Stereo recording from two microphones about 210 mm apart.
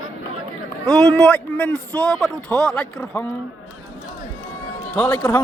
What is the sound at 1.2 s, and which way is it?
A man's voice, 5° left (ahead or behind).